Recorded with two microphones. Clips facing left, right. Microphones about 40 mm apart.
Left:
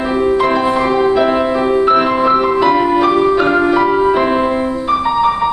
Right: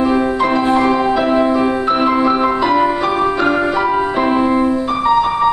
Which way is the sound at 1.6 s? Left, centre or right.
Centre.